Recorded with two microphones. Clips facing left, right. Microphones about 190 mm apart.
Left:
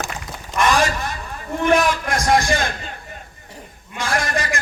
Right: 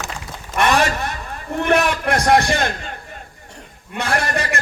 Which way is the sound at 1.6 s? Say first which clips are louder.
Even; 60° right (ahead or behind).